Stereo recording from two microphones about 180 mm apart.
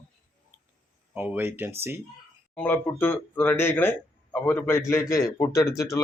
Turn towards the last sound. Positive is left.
turn(degrees=15)  # may be behind; listen again after turning